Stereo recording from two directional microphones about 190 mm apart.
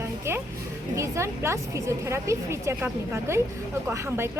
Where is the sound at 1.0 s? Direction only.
15° right (ahead or behind).